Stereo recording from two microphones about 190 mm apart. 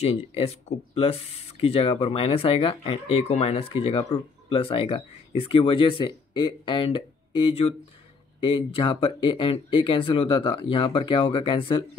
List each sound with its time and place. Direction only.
0.0 s speech: 30° left (ahead or behind)